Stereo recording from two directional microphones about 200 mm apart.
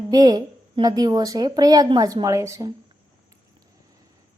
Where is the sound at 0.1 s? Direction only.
20° right (ahead or behind).